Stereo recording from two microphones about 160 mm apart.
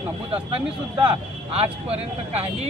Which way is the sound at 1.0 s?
40° right (ahead or behind).